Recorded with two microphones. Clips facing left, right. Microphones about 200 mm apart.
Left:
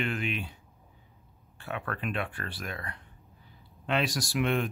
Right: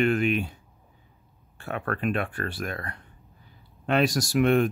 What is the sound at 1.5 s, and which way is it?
Speech, 50° right (ahead or behind).